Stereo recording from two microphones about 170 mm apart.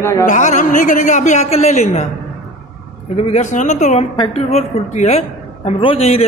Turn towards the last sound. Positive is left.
turn(degrees=35)  # may be behind; listen again after turning